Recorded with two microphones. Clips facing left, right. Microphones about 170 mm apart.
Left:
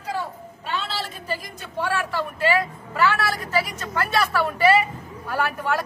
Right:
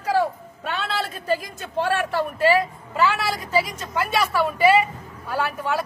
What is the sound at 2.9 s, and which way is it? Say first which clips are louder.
A woman's voice: even; 15° right (ahead or behind).